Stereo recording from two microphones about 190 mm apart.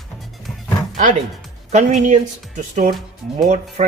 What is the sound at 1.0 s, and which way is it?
Speech, 40° right (ahead or behind).